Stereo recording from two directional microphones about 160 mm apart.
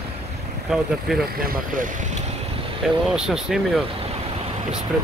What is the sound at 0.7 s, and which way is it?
Speech, centre (ahead or behind).